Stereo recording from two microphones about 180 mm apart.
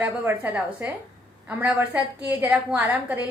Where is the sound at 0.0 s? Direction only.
10° right (ahead or behind).